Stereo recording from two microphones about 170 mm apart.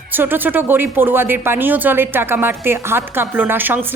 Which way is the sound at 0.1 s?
10° right (ahead or behind).